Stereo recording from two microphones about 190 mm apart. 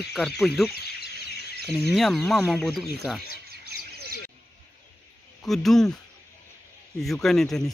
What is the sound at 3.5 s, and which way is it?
Bird, 55° right (ahead or behind).